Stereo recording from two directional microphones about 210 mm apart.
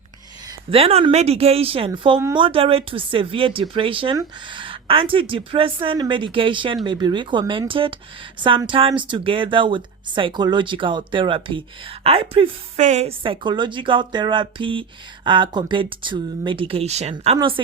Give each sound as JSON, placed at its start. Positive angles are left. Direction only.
{"t": 0.7, "sound": "speech", "side_deg": -30}